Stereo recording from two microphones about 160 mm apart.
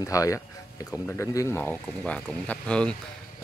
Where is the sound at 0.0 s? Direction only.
20° left (ahead or behind).